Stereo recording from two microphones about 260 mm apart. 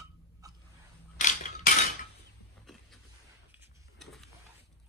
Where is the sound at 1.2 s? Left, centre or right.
Left.